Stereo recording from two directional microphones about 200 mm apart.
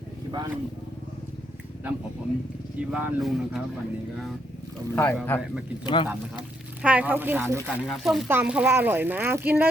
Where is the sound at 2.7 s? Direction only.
5° right (ahead or behind).